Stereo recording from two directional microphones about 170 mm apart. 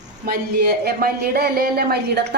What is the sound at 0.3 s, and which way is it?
Speech, 70° right (ahead or behind).